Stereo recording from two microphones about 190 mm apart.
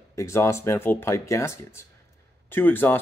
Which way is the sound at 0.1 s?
15° left (ahead or behind).